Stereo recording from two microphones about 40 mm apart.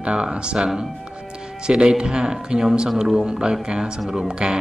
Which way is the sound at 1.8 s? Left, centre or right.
Right.